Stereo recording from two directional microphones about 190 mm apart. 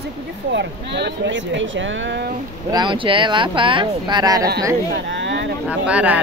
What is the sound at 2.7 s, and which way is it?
Speech, 25° right (ahead or behind).